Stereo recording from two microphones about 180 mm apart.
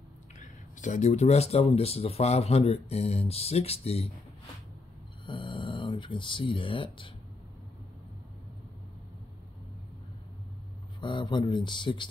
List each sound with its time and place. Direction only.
0.4 s speech: 45° left (ahead or behind)
5.2 s a sound: 25° left (ahead or behind)
11.0 s speech: 25° left (ahead or behind)